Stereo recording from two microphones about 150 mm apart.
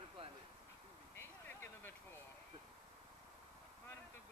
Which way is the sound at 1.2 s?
15° left (ahead or behind).